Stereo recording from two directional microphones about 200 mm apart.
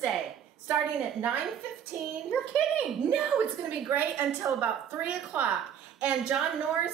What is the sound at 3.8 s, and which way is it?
A woman's voice, 10° right (ahead or behind).